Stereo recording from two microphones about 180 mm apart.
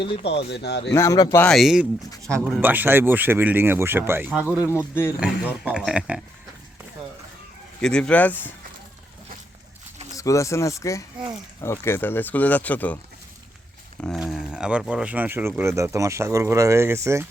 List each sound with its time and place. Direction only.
0.0 s speech: 30° left (ahead or behind)
0.3 s speech: 65° left (ahead or behind)
0.9 s speech: 15° left (ahead or behind)
1.5 s speech: centre (ahead or behind)
2.2 s speech: 15° right (ahead or behind)
7.8 s speech: 5° left (ahead or behind)
10.2 s speech: 15° left (ahead or behind)
14.0 s speech: centre (ahead or behind); by 17.2 s 15° right (ahead or behind)